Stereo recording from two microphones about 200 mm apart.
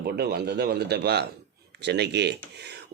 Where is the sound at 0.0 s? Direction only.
50° right (ahead or behind).